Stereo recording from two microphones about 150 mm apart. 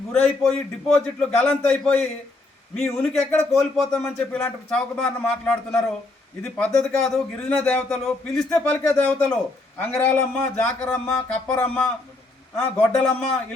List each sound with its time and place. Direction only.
0.1 s speech: 5° left (ahead or behind)
8.8 s speech: 20° left (ahead or behind)
9.9 s speech: 10° left (ahead or behind)